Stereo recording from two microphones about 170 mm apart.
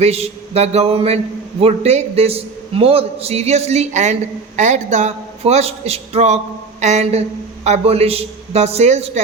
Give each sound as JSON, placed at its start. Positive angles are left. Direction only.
{"t": 0.0, "sound": "a man's voice", "side_deg": -40}